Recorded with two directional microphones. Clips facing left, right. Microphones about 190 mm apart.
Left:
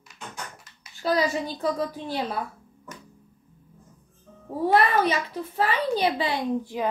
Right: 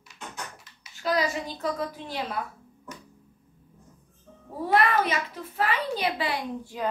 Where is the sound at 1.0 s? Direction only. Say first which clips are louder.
Left 2 dB; 35° left (ahead or behind).